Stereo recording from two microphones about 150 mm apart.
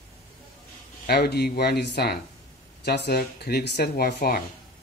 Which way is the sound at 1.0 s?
90° left.